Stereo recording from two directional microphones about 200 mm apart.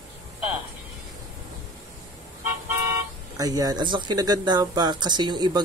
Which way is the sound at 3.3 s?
20° right (ahead or behind).